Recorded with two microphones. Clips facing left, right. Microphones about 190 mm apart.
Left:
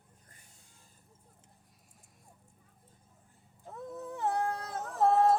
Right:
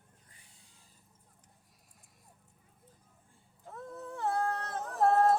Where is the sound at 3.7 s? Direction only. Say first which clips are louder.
Left 2 dB; 15° left (ahead or behind); by 5.4 s centre (ahead or behind).